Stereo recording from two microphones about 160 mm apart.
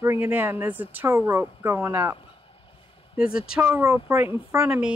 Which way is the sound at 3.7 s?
15° right (ahead or behind).